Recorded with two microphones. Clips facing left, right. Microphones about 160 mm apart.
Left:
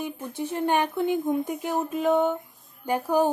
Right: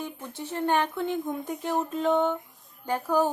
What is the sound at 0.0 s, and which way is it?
A woman's voice, 15° left (ahead or behind).